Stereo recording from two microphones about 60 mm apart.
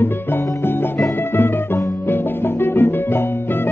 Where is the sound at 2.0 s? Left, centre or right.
Left.